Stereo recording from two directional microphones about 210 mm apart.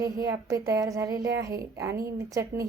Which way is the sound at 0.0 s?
15° right (ahead or behind).